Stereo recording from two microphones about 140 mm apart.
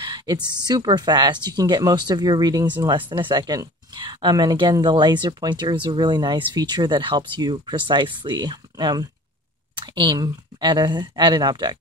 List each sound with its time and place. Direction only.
0.0 s speech: 30° right (ahead or behind)